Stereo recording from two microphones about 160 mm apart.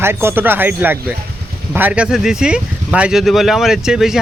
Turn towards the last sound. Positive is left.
turn(degrees=-5)  # may be behind; listen again after turning